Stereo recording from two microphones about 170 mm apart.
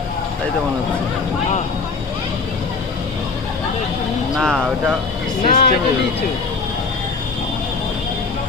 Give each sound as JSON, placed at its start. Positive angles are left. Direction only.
{"t": 4.4, "sound": "speech", "side_deg": 0}
{"t": 5.5, "sound": "music", "side_deg": 60}